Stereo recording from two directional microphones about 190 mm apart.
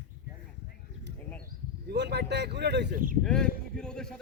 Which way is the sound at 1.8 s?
65° right (ahead or behind).